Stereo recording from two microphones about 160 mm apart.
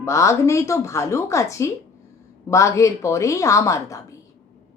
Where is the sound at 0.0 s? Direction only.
20° left (ahead or behind).